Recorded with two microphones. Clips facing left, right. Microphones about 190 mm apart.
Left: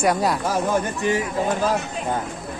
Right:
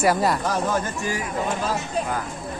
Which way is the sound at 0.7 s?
20° left (ahead or behind).